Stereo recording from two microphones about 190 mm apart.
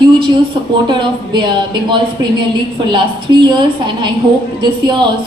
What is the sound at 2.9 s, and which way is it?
A woman's voice, 25° right (ahead or behind).